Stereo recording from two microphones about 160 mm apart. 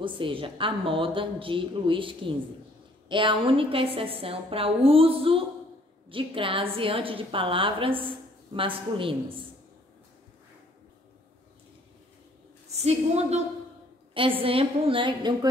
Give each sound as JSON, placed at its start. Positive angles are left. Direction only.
{"t": 0.0, "sound": "a woman's voice", "side_deg": -35}
{"t": 12.7, "sound": "a woman's voice", "side_deg": -40}